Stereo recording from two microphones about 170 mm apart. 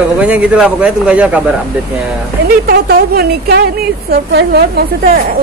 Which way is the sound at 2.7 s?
65° right (ahead or behind).